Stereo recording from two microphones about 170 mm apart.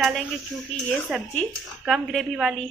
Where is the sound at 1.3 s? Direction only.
5° left (ahead or behind).